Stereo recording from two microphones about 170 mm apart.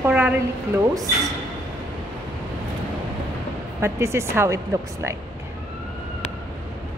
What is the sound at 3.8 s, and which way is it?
Speech, 15° right (ahead or behind).